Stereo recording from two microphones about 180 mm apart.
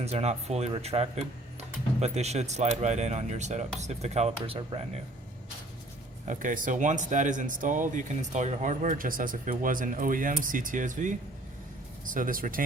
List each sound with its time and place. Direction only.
0.0 s speech: 35° right (ahead or behind)
6.2 s speech: 45° right (ahead or behind)